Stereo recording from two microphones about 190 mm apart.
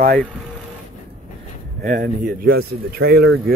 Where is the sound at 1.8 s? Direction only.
45° right (ahead or behind).